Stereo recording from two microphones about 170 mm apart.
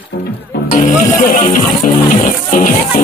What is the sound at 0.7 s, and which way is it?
Music, 50° left (ahead or behind).